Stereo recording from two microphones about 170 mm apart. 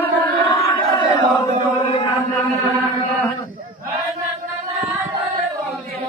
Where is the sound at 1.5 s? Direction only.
30° left (ahead or behind).